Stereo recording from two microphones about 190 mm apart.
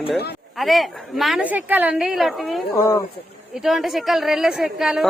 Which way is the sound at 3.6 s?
Centre (ahead or behind).